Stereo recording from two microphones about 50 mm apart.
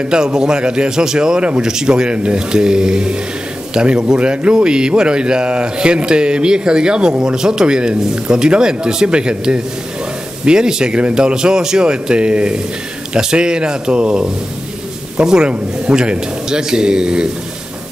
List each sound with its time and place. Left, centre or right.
0.1 s speech: centre